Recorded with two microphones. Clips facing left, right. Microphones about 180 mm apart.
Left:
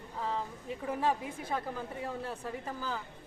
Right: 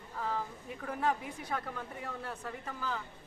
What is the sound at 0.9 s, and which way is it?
A woman's voice, 25° left (ahead or behind).